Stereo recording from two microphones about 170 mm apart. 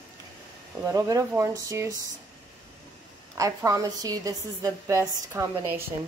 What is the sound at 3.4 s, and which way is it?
A woman's voice, 20° right (ahead or behind).